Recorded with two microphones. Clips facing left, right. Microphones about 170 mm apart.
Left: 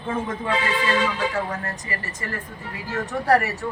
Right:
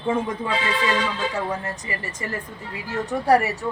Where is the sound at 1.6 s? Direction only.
20° right (ahead or behind).